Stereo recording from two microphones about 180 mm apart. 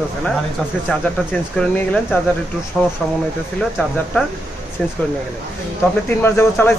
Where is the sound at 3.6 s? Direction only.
5° left (ahead or behind).